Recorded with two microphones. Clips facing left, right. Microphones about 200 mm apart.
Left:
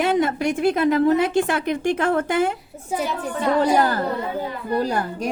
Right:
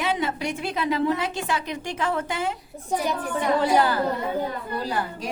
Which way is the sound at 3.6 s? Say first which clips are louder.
Left 2 dB; 45° left (ahead or behind).